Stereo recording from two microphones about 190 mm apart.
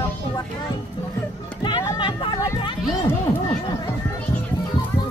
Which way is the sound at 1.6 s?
25° left (ahead or behind).